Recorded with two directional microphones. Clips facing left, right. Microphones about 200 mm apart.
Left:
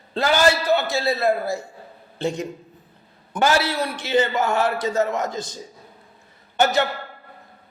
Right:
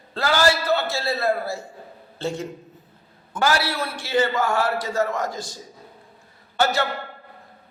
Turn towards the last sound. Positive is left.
turn(degrees=20)  # may be behind; listen again after turning